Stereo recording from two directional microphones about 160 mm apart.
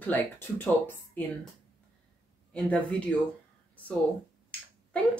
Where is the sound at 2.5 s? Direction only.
10° left (ahead or behind).